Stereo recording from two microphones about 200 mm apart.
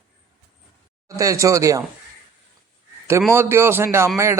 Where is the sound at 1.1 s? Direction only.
15° right (ahead or behind).